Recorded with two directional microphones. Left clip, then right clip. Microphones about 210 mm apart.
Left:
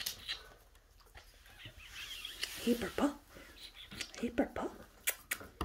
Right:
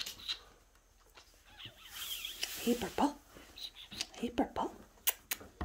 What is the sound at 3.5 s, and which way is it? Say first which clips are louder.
Scissors: right 4 dB; 15° right (ahead or behind).